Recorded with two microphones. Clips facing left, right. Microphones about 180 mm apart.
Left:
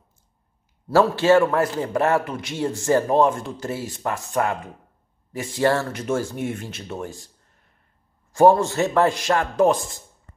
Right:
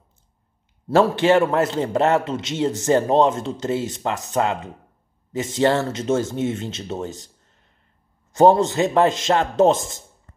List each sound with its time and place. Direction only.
0.8 s a man's voice: 20° right (ahead or behind)
8.3 s a man's voice: 20° right (ahead or behind)